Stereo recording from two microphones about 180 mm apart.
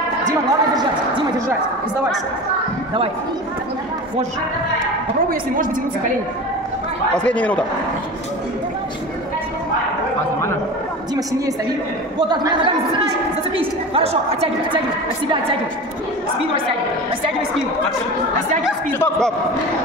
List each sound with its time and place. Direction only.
0.3 s a sound: 25° right (ahead or behind)
7.2 s speech: 5° left (ahead or behind)
12.2 s a woman's voice: 25° right (ahead or behind)
18.9 s a man's voice: 5° left (ahead or behind)